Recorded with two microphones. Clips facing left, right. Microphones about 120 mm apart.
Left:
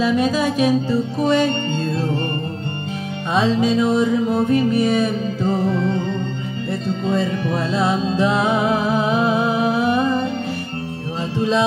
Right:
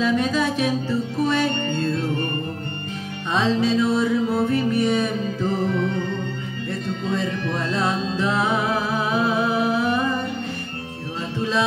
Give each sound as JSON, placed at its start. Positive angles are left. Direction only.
{"t": 0.0, "sound": "music", "side_deg": 10}
{"t": 3.3, "sound": "music", "side_deg": 15}
{"t": 7.5, "sound": "music", "side_deg": 5}